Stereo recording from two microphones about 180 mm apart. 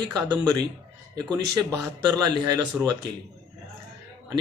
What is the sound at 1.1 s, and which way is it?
Speech, 20° right (ahead or behind).